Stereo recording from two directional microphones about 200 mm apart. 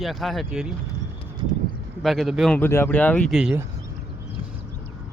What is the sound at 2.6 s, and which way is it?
Speech, 10° left (ahead or behind).